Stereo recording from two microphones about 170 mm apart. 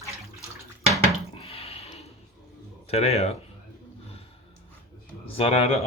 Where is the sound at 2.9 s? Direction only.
40° left (ahead or behind).